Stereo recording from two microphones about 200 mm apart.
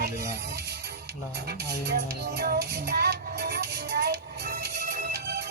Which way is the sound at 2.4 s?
55° right (ahead or behind).